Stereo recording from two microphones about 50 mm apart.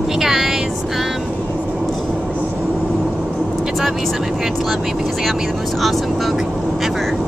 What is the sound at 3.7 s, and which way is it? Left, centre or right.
Vehicle, centre.